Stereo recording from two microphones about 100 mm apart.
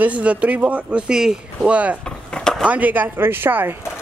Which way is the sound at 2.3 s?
5° left (ahead or behind).